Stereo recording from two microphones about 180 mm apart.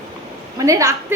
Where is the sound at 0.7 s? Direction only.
15° right (ahead or behind).